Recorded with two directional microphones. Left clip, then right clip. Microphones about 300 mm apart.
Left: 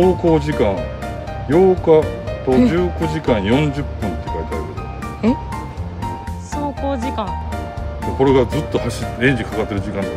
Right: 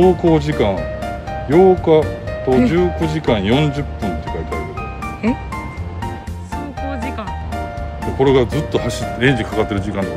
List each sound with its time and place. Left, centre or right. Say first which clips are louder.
0.0 s speech: right 1 dB; centre
6.5 s music: left 3 dB; centre
8.2 s speech: right 1 dB; centre